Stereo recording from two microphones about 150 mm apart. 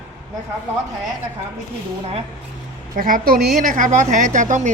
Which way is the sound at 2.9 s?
70° right (ahead or behind).